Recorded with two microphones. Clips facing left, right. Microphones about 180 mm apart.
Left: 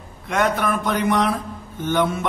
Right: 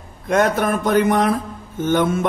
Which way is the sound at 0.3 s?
45° right (ahead or behind).